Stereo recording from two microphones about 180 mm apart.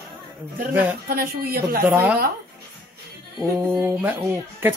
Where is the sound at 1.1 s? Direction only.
60° right (ahead or behind).